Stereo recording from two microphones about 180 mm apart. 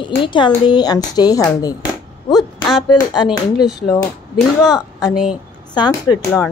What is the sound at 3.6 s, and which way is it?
Speech, centre (ahead or behind).